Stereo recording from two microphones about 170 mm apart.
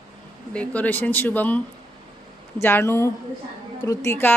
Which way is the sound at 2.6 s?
15° left (ahead or behind).